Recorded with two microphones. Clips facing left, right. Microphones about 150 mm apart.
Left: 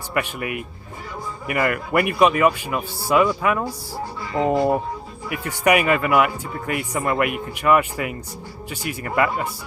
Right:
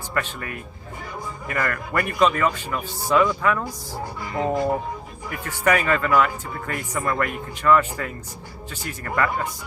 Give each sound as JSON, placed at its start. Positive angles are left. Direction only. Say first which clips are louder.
{"t": 0.1, "sound": "speech", "louder": "left 4 dB", "side_deg": 15}